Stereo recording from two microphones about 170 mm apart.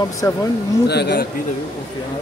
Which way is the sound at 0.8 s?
70° left (ahead or behind).